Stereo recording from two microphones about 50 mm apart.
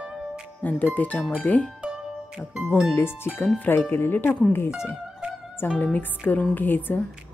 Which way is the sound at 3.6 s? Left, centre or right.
Left.